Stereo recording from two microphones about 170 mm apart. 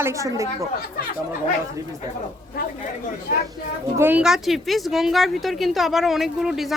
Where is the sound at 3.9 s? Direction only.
10° right (ahead or behind).